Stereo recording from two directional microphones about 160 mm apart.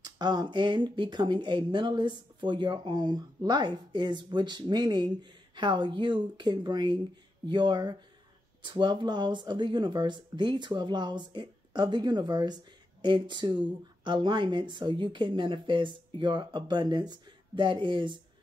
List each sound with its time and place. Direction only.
0.0 s speech: 25° right (ahead or behind)